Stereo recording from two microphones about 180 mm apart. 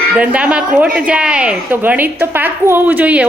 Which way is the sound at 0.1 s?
5° right (ahead or behind).